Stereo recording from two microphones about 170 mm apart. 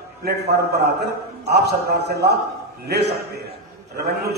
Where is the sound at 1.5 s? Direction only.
75° right (ahead or behind).